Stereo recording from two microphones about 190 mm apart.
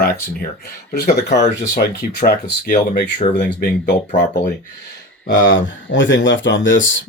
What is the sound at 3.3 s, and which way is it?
Speech, 65° left (ahead or behind).